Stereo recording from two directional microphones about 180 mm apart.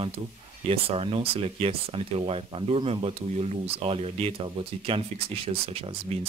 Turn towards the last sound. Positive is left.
turn(degrees=-35)  # may be behind; listen again after turning